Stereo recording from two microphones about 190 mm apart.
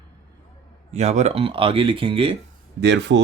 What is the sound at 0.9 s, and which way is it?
Speech, 35° right (ahead or behind).